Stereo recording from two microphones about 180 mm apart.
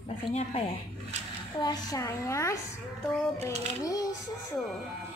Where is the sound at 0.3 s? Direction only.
35° left (ahead or behind).